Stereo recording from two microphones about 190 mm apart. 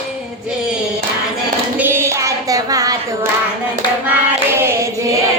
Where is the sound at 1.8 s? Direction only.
15° right (ahead or behind).